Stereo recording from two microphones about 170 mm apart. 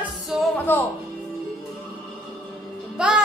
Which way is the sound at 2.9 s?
5° right (ahead or behind).